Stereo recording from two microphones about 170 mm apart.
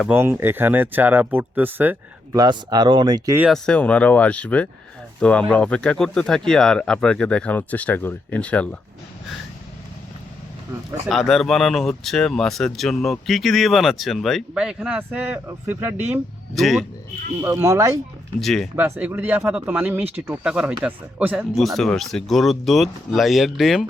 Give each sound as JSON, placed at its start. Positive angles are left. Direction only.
{"t": 0.1, "sound": "speech", "side_deg": -15}
{"t": 2.3, "sound": "speech", "side_deg": -25}
{"t": 3.5, "sound": "speech", "side_deg": 5}
{"t": 11.1, "sound": "speech", "side_deg": 0}
{"t": 16.6, "sound": "speech", "side_deg": 0}
{"t": 17.4, "sound": "speech", "side_deg": -20}
{"t": 18.3, "sound": "speech", "side_deg": 0}
{"t": 18.8, "sound": "speech", "side_deg": -10}